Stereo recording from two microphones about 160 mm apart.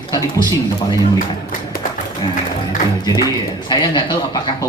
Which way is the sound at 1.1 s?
60° left (ahead or behind).